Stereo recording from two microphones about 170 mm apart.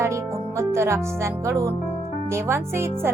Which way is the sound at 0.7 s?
15° right (ahead or behind).